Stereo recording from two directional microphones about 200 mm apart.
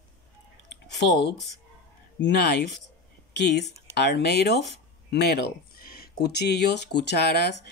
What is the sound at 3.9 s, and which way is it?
Speech, 55° left (ahead or behind).